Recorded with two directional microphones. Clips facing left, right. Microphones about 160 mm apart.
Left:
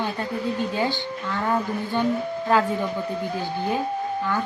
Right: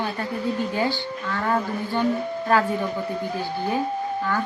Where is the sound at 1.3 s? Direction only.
15° left (ahead or behind).